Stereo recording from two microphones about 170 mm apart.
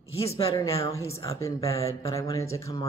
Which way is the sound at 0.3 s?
15° left (ahead or behind).